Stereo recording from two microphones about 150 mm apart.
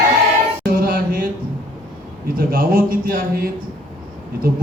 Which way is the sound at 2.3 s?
75° right (ahead or behind).